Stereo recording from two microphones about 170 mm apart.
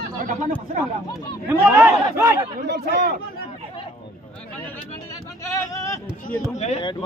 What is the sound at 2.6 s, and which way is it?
Speech, 75° right (ahead or behind).